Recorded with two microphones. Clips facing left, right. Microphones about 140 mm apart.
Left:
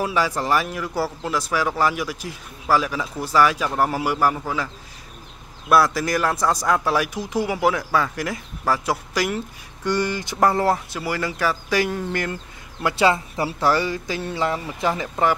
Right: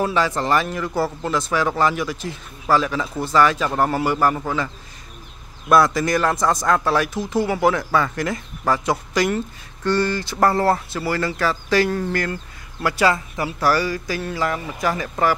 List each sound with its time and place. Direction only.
0.0 s speech: 10° left (ahead or behind)
5.7 s speech: 5° left (ahead or behind)